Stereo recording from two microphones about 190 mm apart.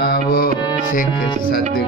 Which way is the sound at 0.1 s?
55° left (ahead or behind).